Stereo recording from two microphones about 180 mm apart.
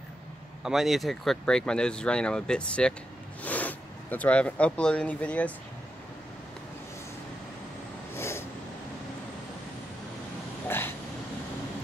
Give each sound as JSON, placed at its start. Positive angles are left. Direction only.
{"t": 0.7, "sound": "speech", "side_deg": 0}
{"t": 8.2, "sound": "snort", "side_deg": 15}